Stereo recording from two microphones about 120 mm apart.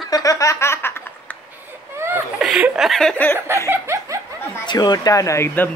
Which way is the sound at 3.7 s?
20° right (ahead or behind).